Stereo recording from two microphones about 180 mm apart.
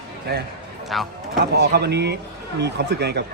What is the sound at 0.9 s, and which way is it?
Speech, centre (ahead or behind).